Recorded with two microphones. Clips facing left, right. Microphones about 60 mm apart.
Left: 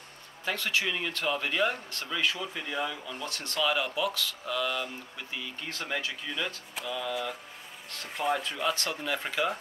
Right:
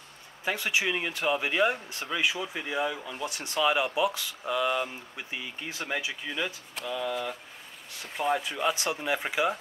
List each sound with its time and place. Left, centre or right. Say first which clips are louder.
0.5 s speech: right 2 dB; centre